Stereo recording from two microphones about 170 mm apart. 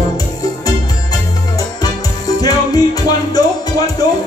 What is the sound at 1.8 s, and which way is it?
Music, 20° left (ahead or behind).